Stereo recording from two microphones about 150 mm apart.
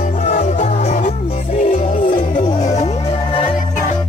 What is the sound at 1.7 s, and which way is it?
Music, 65° left (ahead or behind).